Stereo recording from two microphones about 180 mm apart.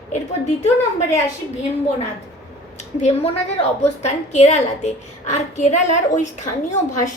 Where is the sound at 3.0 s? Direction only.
35° left (ahead or behind).